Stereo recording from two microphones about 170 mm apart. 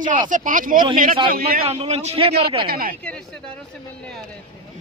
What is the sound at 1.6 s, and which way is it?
Speech, 35° right (ahead or behind).